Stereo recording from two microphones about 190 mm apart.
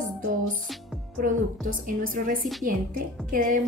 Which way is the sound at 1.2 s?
45° right (ahead or behind).